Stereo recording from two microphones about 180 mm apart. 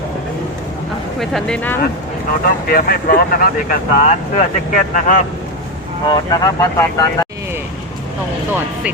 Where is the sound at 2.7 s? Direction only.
55° left (ahead or behind).